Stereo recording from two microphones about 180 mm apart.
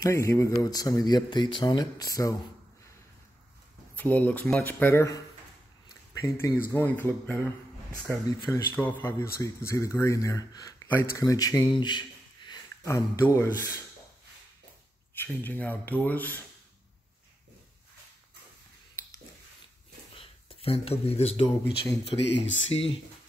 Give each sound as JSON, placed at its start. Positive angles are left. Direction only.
{"t": 0.0, "sound": "speech", "side_deg": 20}
{"t": 3.9, "sound": "speech", "side_deg": 10}
{"t": 15.1, "sound": "speech", "side_deg": 10}
{"t": 20.2, "sound": "a sound", "side_deg": 30}
{"t": 22.2, "sound": "speech", "side_deg": 80}
{"t": 22.7, "sound": "speech", "side_deg": 30}